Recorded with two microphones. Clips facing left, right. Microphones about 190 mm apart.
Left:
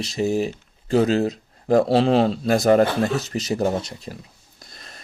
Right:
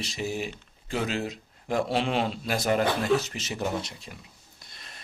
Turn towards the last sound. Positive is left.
turn(degrees=40)  # may be behind; listen again after turning